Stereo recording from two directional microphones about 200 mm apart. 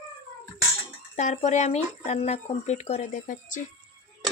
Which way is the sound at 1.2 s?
35° left (ahead or behind).